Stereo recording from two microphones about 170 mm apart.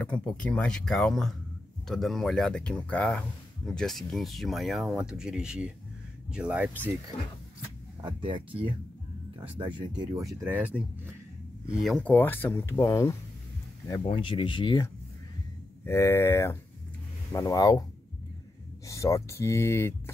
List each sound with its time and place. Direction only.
0.0 s speech: 5° left (ahead or behind); by 6.9 s 10° right (ahead or behind)
8.0 s speech: 30° right (ahead or behind); by 10.7 s 10° right (ahead or behind)
11.8 s speech: 5° left (ahead or behind)
14.0 s speech: 30° left (ahead or behind)
15.8 s speech: 15° left (ahead or behind)
18.9 s speech: 20° left (ahead or behind)